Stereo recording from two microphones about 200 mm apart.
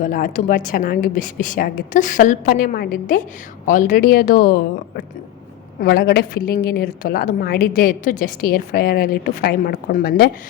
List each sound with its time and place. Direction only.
0.0 s a woman's voice: 40° left (ahead or behind)
5.8 s a woman's voice: 50° left (ahead or behind)